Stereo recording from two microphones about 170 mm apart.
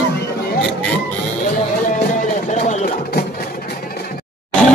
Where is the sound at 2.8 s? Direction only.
65° left (ahead or behind).